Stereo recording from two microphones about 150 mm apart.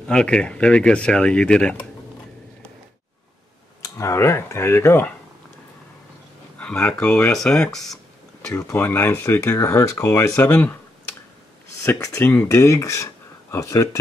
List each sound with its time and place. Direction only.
0.1 s speech: 5° left (ahead or behind)
3.8 s speech: 20° left (ahead or behind)
6.6 s speech: 10° left (ahead or behind)
8.5 s speech: 15° left (ahead or behind)
11.8 s speech: 15° left (ahead or behind)